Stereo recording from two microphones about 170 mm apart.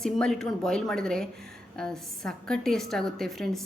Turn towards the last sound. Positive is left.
turn(degrees=0)  # may be behind; listen again after turning